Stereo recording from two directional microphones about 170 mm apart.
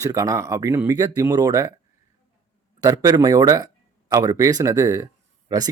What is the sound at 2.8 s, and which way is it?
Speech, 20° right (ahead or behind).